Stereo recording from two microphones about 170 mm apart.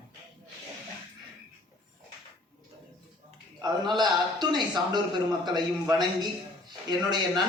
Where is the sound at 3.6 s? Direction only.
25° right (ahead or behind).